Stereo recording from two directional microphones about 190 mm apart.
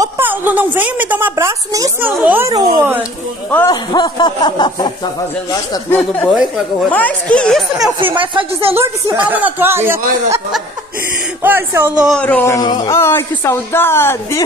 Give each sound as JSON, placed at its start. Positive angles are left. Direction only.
{"t": 0.0, "sound": "a woman's voice", "side_deg": -10}
{"t": 3.6, "sound": "speech", "side_deg": 20}
{"t": 5.9, "sound": "a woman's voice", "side_deg": 10}
{"t": 8.2, "sound": "speech", "side_deg": -30}
{"t": 9.1, "sound": "a woman's voice", "side_deg": -10}
{"t": 11.4, "sound": "a woman's voice", "side_deg": -10}
{"t": 12.0, "sound": "a woman's voice", "side_deg": 5}
{"t": 12.5, "sound": "a woman's voice", "side_deg": 20}